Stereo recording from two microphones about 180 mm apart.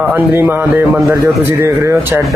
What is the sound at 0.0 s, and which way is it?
Speech, 10° right (ahead or behind).